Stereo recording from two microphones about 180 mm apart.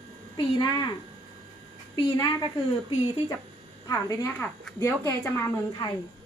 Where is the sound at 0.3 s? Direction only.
25° left (ahead or behind).